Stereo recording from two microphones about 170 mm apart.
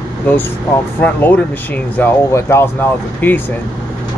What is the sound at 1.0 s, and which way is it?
Speech, 10° left (ahead or behind).